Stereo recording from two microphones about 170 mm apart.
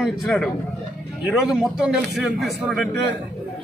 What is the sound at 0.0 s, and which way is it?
Speech, centre (ahead or behind).